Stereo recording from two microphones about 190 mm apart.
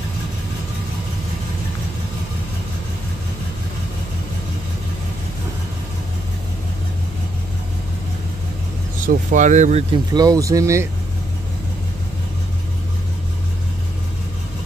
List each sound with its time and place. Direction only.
9.0 s speech: 40° right (ahead or behind)
10.1 s speech: 20° right (ahead or behind)